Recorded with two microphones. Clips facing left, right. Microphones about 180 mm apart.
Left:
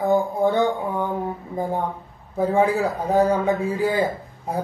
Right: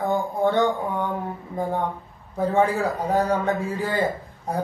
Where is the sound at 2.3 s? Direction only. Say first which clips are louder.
Left 2 dB; 10° left (ahead or behind).